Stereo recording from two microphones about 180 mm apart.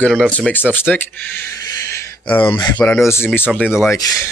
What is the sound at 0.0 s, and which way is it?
Speech, 5° left (ahead or behind).